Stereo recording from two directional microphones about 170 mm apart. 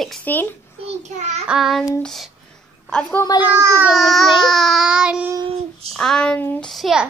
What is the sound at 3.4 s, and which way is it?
Speech, 15° right (ahead or behind).